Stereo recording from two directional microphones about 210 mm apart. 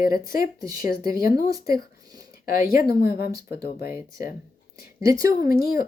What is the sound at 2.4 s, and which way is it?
Speech, 45° left (ahead or behind).